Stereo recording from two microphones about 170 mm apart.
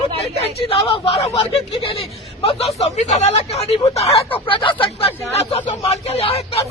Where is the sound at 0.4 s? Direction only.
35° left (ahead or behind).